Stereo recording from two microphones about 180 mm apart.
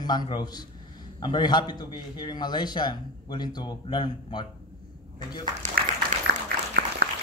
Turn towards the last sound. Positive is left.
turn(degrees=-60)  # may be behind; listen again after turning